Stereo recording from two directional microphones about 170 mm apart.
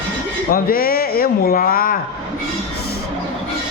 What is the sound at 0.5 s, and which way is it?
Speech, 60° left (ahead or behind).